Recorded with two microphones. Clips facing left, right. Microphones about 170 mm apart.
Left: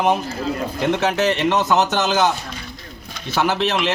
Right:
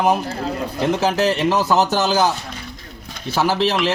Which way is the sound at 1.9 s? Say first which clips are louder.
Right 1 dB; 35° right (ahead or behind).